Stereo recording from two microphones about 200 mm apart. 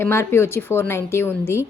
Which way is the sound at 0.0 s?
10° left (ahead or behind).